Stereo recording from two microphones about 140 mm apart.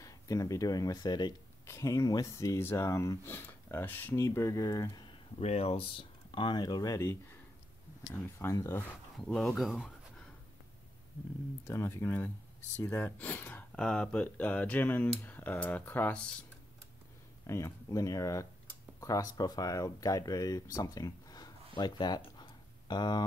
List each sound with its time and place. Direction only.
0.0 s speech: 25° left (ahead or behind)
5.4 s speech: 45° left (ahead or behind); by 7.3 s 20° left (ahead or behind)
8.4 s speech: 20° left (ahead or behind)
9.2 s speech: 5° left (ahead or behind)
9.6 s a sound: centre (ahead or behind)
11.6 s speech: 15° left (ahead or behind)
17.5 s speech: 20° left (ahead or behind)
20.7 s a sound: 25° left (ahead or behind)